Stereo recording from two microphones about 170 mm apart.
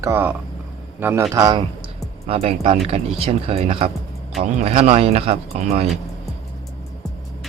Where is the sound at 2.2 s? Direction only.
35° right (ahead or behind).